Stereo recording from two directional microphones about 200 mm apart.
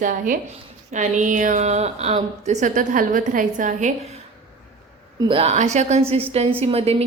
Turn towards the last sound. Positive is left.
turn(degrees=-30)  # may be behind; listen again after turning